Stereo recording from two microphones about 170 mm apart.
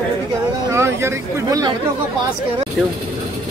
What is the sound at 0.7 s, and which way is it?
Speech, 15° right (ahead or behind).